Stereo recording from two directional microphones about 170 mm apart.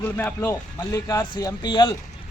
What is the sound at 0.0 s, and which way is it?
A man's voice, 10° left (ahead or behind).